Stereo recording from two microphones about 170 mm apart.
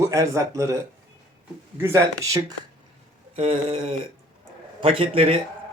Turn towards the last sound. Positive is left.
turn(degrees=-35)  # may be behind; listen again after turning